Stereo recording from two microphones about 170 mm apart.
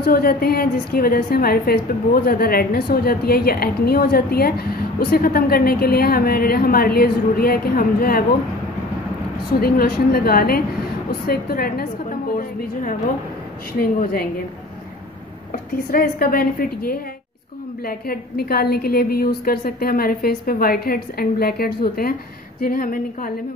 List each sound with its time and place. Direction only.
0.0 s a woman's voice: 60° left (ahead or behind)
9.6 s a woman's voice: 65° left (ahead or behind)
13.7 s a woman's voice: 60° left (ahead or behind)
15.5 s a woman's voice: 60° left (ahead or behind)